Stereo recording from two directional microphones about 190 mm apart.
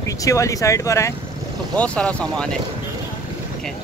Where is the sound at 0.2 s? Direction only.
15° left (ahead or behind).